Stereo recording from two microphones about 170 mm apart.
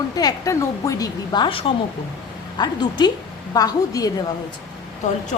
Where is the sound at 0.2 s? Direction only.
20° left (ahead or behind).